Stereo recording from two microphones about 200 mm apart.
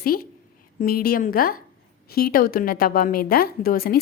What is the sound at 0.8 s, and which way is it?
A woman's voice, 45° left (ahead or behind).